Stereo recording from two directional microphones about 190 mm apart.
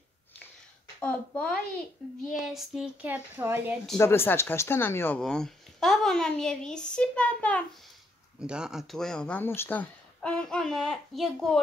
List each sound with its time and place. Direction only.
1.0 s a woman's voice: 5° left (ahead or behind); by 3.7 s 10° right (ahead or behind)
4.0 s speech: 10° left (ahead or behind)
8.4 s speech: 5° right (ahead or behind)